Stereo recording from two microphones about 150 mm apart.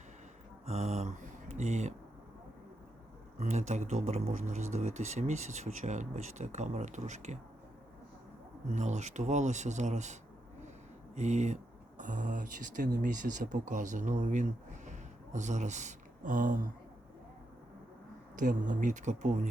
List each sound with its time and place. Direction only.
0.6 s a sound: 45° right (ahead or behind)
3.3 s speech: 50° right (ahead or behind)
8.7 s speech: 50° right (ahead or behind)
18.3 s speech: 60° right (ahead or behind)